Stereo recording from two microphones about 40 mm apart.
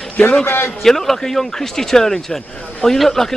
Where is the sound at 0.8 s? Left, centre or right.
Centre.